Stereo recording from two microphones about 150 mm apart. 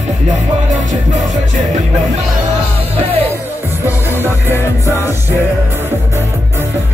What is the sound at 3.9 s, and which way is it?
Music, 15° right (ahead or behind).